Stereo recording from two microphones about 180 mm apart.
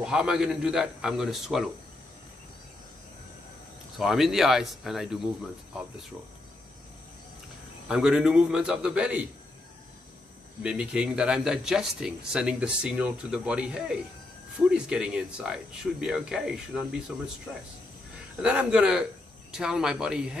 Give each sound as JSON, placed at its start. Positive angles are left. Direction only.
{"t": 0.0, "sound": "speech", "side_deg": -5}
{"t": 4.0, "sound": "speech", "side_deg": 0}
{"t": 7.9, "sound": "speech", "side_deg": -5}
{"t": 10.6, "sound": "speech", "side_deg": -5}
{"t": 18.4, "sound": "speech", "side_deg": -5}